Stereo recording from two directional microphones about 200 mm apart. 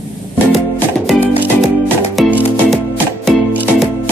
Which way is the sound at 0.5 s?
5° left (ahead or behind).